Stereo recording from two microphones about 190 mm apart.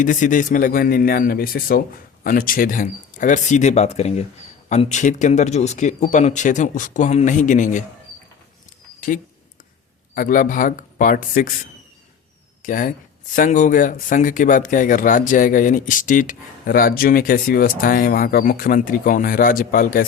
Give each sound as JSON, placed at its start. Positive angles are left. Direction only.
{"t": 0.0, "sound": "speech", "side_deg": 45}
{"t": 9.0, "sound": "a sound", "side_deg": 45}
{"t": 10.2, "sound": "speech", "side_deg": 45}